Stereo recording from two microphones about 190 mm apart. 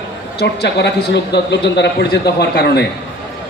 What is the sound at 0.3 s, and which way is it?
A man's voice, 60° left (ahead or behind).